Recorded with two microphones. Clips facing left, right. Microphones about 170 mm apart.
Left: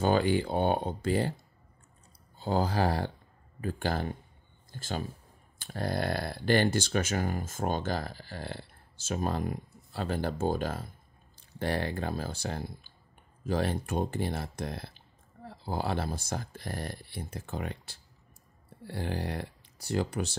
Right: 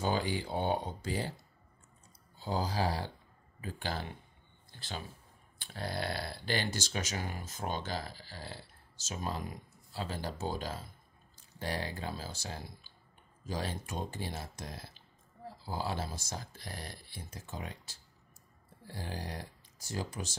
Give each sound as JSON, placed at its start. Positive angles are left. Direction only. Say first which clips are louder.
{"t": 0.0, "sound": "speech", "louder": "left 7 dB", "side_deg": 60}